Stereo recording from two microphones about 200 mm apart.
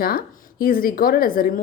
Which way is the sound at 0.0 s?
45° left (ahead or behind).